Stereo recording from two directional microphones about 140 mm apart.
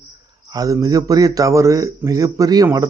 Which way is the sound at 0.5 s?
25° right (ahead or behind).